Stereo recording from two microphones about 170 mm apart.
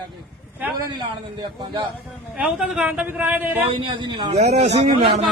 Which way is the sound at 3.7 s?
30° right (ahead or behind).